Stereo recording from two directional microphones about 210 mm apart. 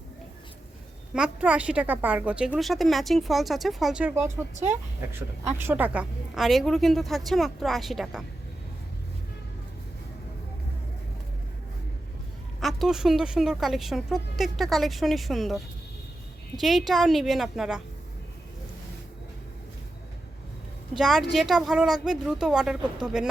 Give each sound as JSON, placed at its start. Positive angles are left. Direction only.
{"t": 1.1, "sound": "a woman's voice", "side_deg": -5}
{"t": 4.5, "sound": "speech", "side_deg": -35}
{"t": 5.6, "sound": "a woman's voice", "side_deg": -5}
{"t": 12.5, "sound": "a woman's voice", "side_deg": 0}
{"t": 20.9, "sound": "a woman's voice", "side_deg": 0}